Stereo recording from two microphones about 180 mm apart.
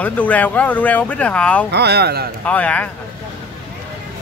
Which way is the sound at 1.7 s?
65° right (ahead or behind).